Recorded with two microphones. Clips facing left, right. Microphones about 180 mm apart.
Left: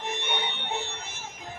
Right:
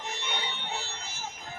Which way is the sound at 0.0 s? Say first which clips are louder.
Left 4 dB; 55° left (ahead or behind).